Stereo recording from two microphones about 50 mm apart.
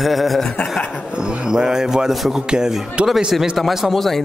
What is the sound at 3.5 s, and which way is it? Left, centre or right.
Speech, centre.